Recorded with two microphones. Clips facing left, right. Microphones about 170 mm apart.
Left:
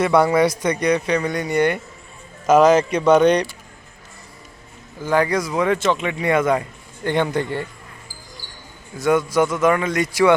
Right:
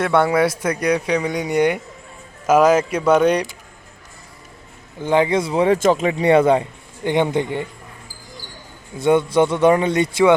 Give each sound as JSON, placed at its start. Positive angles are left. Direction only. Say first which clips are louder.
{"t": 0.0, "sound": "speech", "louder": "left 1 dB", "side_deg": 0}
{"t": 5.0, "sound": "a man's voice", "louder": "right 2 dB", "side_deg": -25}
{"t": 7.0, "sound": "speech", "louder": "right 2 dB", "side_deg": -20}
{"t": 9.0, "sound": "a man's voice", "louder": "right 2 dB", "side_deg": -30}